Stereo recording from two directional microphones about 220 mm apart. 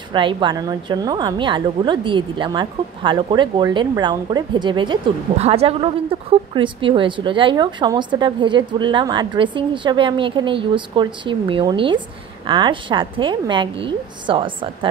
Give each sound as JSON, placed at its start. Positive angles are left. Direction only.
{"t": 0.1, "sound": "a woman's voice", "side_deg": -20}